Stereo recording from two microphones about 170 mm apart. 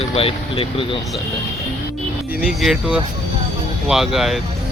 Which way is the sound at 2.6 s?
5° right (ahead or behind).